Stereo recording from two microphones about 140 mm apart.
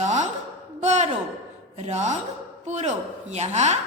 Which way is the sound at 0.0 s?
55° right (ahead or behind).